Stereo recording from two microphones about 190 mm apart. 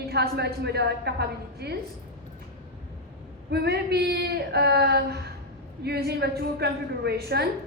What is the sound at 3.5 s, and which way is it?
A woman's voice, 60° right (ahead or behind).